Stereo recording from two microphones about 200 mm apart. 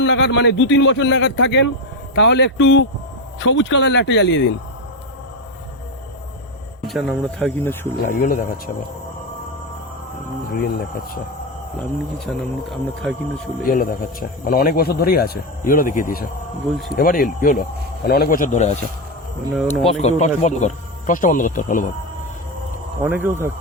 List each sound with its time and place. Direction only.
0.0 s speech: 60° left (ahead or behind)
6.8 s speech: centre (ahead or behind)
7.9 s a man's voice: 45° left (ahead or behind)
10.5 s a man's voice: 45° left (ahead or behind)
12.2 s speech: 5° left (ahead or behind)
13.6 s a man's voice: 45° left (ahead or behind)
19.6 s speech: centre (ahead or behind)
20.0 s speech: 35° left (ahead or behind)
23.0 s speech: 10° right (ahead or behind)